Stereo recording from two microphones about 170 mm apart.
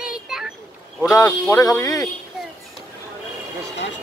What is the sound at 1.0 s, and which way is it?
Speech, 15° left (ahead or behind).